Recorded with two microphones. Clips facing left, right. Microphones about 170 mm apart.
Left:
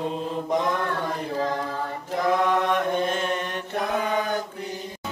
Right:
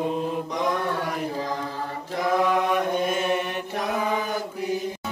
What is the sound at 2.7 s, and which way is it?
Chant, 10° right (ahead or behind).